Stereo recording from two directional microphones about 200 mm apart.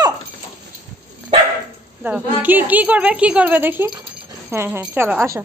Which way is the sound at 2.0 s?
10° right (ahead or behind).